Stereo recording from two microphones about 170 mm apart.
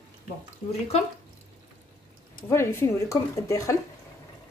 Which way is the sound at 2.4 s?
15° left (ahead or behind).